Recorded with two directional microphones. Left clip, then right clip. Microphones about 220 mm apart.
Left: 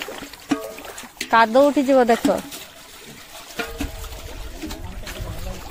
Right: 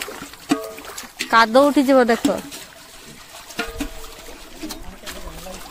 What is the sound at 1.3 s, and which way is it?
Speech, 20° right (ahead or behind).